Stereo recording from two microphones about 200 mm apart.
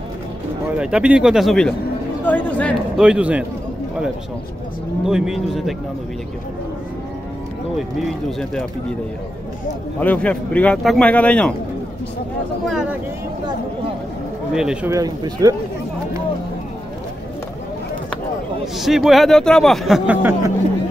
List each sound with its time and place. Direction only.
0.7 s speech: 5° right (ahead or behind)
3.0 s speech: 5° right (ahead or behind)
5.0 s speech: 5° right (ahead or behind)
9.9 s speech: 5° left (ahead or behind)
14.5 s speech: 5° right (ahead or behind)
14.9 s speech: 20° right (ahead or behind)
18.8 s speech: centre (ahead or behind)